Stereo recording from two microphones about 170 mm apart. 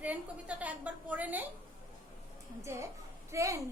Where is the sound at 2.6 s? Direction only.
15° right (ahead or behind).